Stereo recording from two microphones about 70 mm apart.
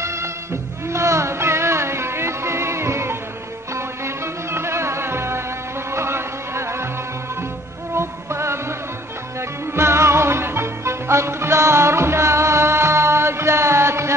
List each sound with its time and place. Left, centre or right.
0.0 s music: right
7.9 s music: right